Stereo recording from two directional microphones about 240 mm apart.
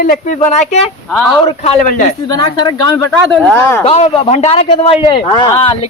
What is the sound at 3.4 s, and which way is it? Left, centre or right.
Speech, centre.